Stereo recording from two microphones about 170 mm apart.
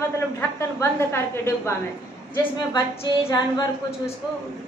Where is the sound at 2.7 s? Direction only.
20° left (ahead or behind).